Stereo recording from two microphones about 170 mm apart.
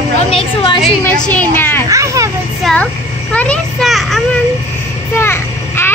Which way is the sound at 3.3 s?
10° left (ahead or behind).